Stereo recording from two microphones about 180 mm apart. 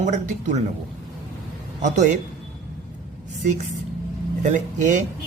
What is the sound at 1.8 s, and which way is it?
Speech, 40° right (ahead or behind).